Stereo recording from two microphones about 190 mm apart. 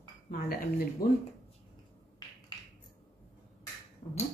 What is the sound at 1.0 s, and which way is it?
Speech, 50° left (ahead or behind).